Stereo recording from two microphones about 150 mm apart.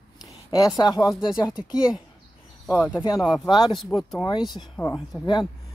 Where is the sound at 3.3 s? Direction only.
30° left (ahead or behind).